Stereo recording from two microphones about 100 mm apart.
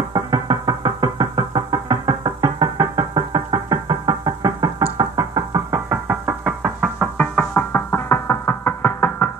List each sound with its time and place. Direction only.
0.1 s music: 40° right (ahead or behind)
4.9 s knock: 35° right (ahead or behind)
5.9 s music: 15° right (ahead or behind)
7.0 s music: 10° left (ahead or behind)